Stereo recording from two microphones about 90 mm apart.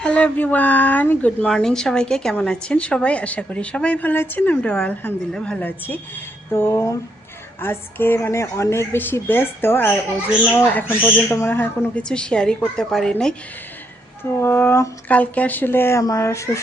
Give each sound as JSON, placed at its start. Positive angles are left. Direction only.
{"t": 0.0, "sound": "speech", "side_deg": 15}
{"t": 1.5, "sound": "speech", "side_deg": 5}
{"t": 5.6, "sound": "a woman's voice", "side_deg": 20}
{"t": 11.9, "sound": "speech", "side_deg": 10}
{"t": 14.3, "sound": "a woman's voice", "side_deg": 25}